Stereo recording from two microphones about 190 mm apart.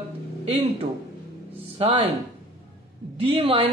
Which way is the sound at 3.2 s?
30° right (ahead or behind).